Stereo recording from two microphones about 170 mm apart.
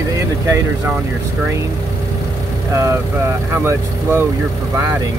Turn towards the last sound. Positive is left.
turn(degrees=-15)  # may be behind; listen again after turning